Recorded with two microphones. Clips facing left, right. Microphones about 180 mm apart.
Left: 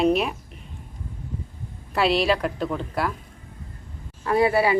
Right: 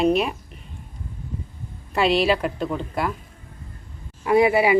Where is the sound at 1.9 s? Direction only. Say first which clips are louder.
Right 2 dB; centre (ahead or behind).